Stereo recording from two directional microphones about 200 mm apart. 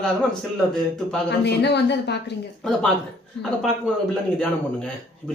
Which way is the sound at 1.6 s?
55° left (ahead or behind).